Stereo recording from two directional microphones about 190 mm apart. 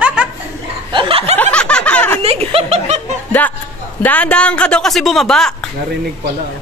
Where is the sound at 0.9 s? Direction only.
30° right (ahead or behind).